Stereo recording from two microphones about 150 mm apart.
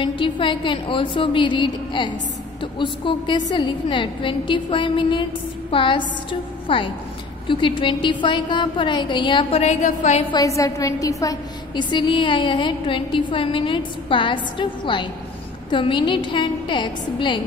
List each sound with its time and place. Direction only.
0.0 s a woman's voice: 35° left (ahead or behind); by 10.2 s 55° left (ahead or behind)
10.3 s a woman's voice: 25° left (ahead or behind)